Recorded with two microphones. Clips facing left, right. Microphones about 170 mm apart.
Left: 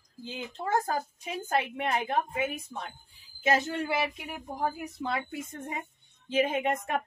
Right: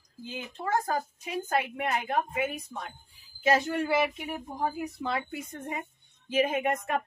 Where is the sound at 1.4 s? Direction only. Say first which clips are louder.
Left 1 dB; 25° left (ahead or behind).